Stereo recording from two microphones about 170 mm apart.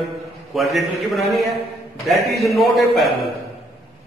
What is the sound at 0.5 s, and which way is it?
A man's voice, centre (ahead or behind).